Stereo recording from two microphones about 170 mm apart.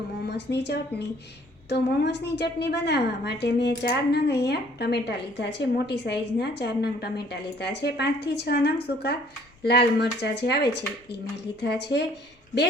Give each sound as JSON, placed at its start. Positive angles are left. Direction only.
{"t": 0.3, "sound": "a woman's voice", "side_deg": 85}
{"t": 11.9, "sound": "speech", "side_deg": 90}